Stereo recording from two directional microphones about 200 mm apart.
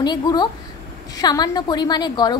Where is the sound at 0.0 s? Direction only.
20° left (ahead or behind).